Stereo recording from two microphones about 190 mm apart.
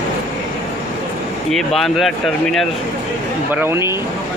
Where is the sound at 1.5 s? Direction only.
Centre (ahead or behind).